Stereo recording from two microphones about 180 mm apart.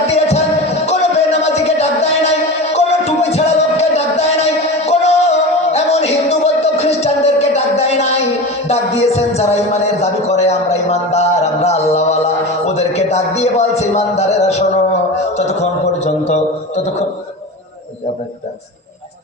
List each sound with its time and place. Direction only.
0.1 s music: 35° left (ahead or behind)
8.6 s a sound: 35° left (ahead or behind)
16.0 s music: 40° left (ahead or behind)